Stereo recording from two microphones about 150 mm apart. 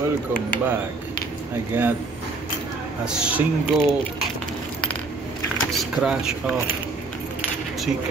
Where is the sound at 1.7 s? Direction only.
15° right (ahead or behind).